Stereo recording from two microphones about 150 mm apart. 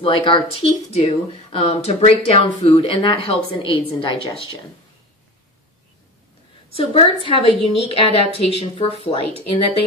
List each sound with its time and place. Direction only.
0.0 s speech: 35° left (ahead or behind)
6.7 s speech: 40° left (ahead or behind)